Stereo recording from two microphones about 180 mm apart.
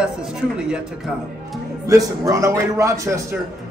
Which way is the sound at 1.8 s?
20° right (ahead or behind).